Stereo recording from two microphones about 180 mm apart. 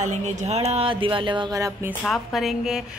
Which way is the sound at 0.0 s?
40° right (ahead or behind).